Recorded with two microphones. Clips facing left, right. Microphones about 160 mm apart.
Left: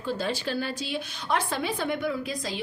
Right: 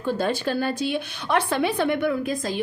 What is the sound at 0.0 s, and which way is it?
A woman's voice, 55° right (ahead or behind).